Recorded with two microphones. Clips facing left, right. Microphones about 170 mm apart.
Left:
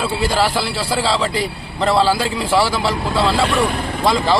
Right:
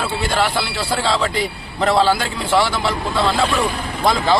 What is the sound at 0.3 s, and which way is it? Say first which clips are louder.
A man's voice: left 1 dB; 5° left (ahead or behind).